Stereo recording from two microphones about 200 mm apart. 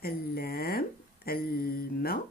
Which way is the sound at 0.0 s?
50° left (ahead or behind).